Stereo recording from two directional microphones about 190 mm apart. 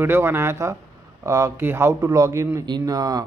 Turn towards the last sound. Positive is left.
turn(degrees=-20)  # may be behind; listen again after turning